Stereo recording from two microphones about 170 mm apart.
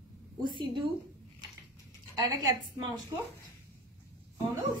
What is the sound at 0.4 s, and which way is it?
Speech, 30° right (ahead or behind).